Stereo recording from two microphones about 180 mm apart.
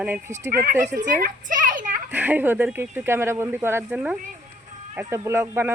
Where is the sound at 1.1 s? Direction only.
45° right (ahead or behind).